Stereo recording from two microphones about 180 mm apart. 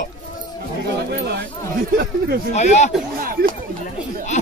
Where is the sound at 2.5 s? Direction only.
40° left (ahead or behind).